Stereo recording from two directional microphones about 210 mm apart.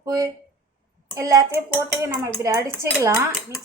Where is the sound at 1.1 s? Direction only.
15° right (ahead or behind).